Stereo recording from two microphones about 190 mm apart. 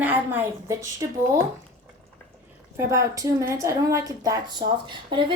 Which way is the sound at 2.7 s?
15° right (ahead or behind).